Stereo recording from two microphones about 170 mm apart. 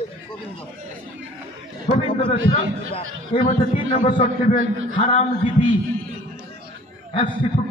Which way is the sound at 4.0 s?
30° left (ahead or behind).